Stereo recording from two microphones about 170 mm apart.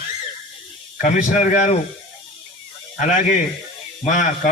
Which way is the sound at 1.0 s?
50° left (ahead or behind).